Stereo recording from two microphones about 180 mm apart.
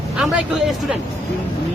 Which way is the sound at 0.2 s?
Centre (ahead or behind).